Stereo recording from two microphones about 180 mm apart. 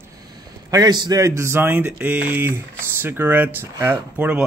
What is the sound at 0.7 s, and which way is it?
Speech, 25° right (ahead or behind).